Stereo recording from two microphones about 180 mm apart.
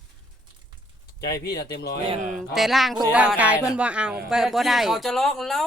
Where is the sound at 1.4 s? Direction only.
60° left (ahead or behind).